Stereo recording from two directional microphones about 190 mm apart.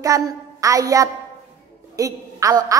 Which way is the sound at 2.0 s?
15° right (ahead or behind).